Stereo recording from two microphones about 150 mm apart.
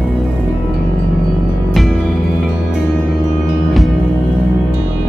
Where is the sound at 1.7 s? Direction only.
Centre (ahead or behind).